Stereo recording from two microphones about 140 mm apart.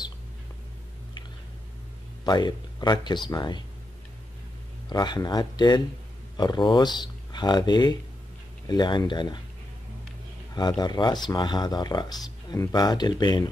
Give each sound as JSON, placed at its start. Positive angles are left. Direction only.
{"t": 2.2, "sound": "speech", "side_deg": 30}
{"t": 4.8, "sound": "speech", "side_deg": 30}
{"t": 10.5, "sound": "speech", "side_deg": 30}